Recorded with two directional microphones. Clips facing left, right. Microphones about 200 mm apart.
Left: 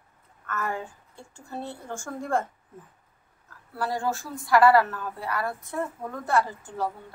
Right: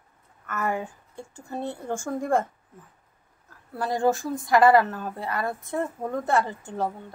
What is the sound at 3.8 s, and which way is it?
A woman's voice, 20° right (ahead or behind).